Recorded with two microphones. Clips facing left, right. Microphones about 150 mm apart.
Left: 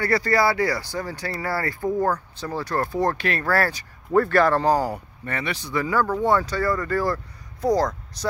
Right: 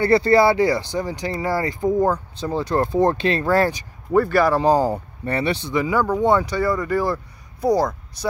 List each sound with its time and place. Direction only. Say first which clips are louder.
0.0 s speech: right 6 dB; 25° right (ahead or behind)
4.1 s speech: right 1 dB; 5° right (ahead or behind)
4.6 s speech: right 4 dB; 25° right (ahead or behind)